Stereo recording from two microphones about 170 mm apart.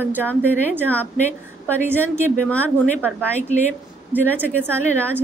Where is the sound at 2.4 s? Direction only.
10° left (ahead or behind).